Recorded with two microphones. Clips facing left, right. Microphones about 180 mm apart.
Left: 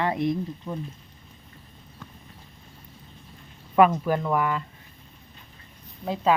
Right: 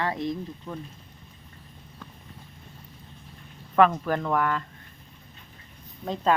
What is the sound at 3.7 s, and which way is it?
Speech, 10° left (ahead or behind).